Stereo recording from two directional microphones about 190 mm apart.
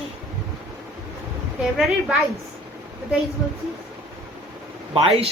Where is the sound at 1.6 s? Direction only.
Centre (ahead or behind).